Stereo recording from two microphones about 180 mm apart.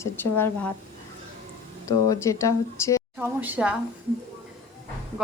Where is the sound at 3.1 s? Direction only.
10° right (ahead or behind).